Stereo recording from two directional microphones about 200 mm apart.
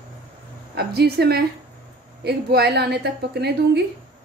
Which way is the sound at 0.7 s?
55° right (ahead or behind).